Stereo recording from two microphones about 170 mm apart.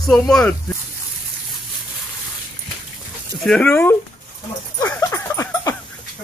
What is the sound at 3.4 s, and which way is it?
Speech, 5° left (ahead or behind).